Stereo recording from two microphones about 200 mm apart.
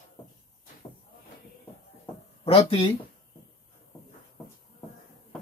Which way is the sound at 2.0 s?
25° left (ahead or behind).